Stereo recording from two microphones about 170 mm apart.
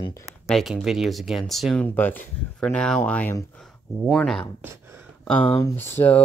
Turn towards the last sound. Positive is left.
turn(degrees=10)  # may be behind; listen again after turning